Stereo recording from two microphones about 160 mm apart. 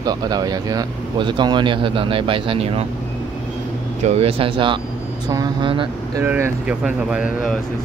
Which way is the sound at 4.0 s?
40° right (ahead or behind).